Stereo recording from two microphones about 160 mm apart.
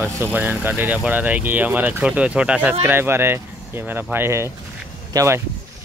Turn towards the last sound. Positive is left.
turn(degrees=-15)  # may be behind; listen again after turning